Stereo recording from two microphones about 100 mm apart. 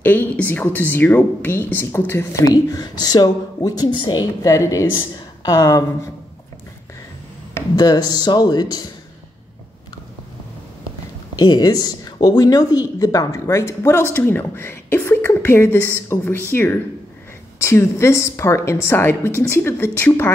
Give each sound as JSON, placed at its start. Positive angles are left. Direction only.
{"t": 0.0, "sound": "speech", "side_deg": 15}
{"t": 2.5, "sound": "speech", "side_deg": 40}
{"t": 7.7, "sound": "speech", "side_deg": 40}
{"t": 11.3, "sound": "a woman's voice", "side_deg": 40}